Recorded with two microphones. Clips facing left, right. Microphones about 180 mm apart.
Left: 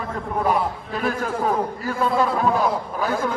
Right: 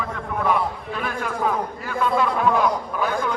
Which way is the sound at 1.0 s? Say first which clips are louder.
Left 4 dB; 40° left (ahead or behind).